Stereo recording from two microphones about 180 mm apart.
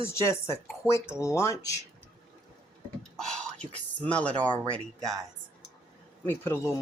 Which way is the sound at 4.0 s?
5° left (ahead or behind).